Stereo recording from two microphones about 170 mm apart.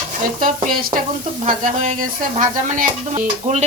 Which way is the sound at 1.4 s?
50° right (ahead or behind).